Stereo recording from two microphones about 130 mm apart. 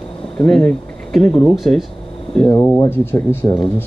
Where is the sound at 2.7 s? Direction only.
20° left (ahead or behind).